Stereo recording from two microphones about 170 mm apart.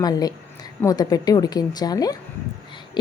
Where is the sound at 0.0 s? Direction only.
20° left (ahead or behind).